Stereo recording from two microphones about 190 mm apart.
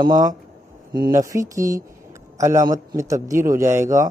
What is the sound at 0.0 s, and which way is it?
A man's voice, 20° right (ahead or behind).